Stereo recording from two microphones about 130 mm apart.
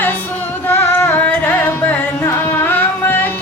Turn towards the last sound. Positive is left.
turn(degrees=15)  # may be behind; listen again after turning